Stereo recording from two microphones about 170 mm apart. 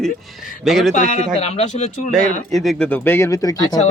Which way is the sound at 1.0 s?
45° left (ahead or behind).